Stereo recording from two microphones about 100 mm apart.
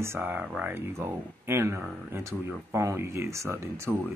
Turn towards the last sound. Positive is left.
turn(degrees=-25)  # may be behind; listen again after turning